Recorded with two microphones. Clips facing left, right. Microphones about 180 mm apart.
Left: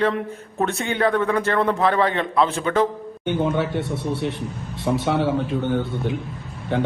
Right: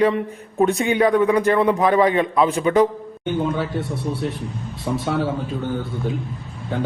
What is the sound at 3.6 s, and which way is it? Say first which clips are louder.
Speech: left 1 dB; centre (ahead or behind).